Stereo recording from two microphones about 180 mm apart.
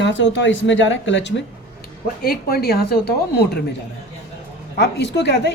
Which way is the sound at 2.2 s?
55° left (ahead or behind).